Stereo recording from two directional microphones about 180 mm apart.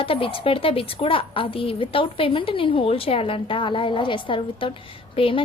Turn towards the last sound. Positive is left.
turn(degrees=30)  # may be behind; listen again after turning